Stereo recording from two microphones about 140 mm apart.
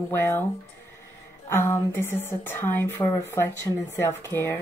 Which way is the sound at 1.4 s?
15° left (ahead or behind).